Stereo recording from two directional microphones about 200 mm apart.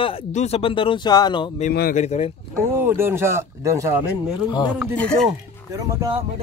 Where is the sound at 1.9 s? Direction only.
35° left (ahead or behind).